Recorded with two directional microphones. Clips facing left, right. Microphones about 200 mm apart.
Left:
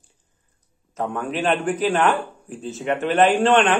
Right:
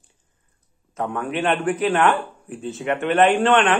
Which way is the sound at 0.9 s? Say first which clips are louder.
Even; 30° left (ahead or behind).